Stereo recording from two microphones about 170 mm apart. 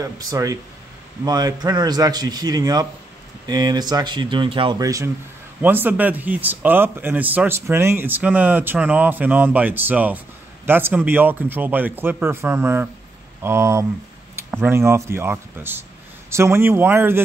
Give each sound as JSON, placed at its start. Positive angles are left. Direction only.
{"t": 0.0, "sound": "a man's voice", "side_deg": -20}